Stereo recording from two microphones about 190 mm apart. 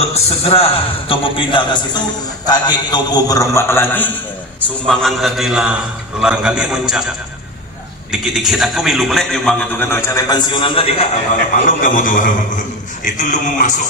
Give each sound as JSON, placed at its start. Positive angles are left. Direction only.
{"t": 0.0, "sound": "a man's voice", "side_deg": 30}
{"t": 8.1, "sound": "a man's voice", "side_deg": 0}
{"t": 11.6, "sound": "a man's voice", "side_deg": 45}
{"t": 13.0, "sound": "music", "side_deg": 40}